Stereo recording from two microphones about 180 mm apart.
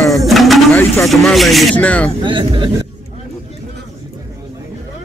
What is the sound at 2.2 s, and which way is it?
Speech, 25° right (ahead or behind).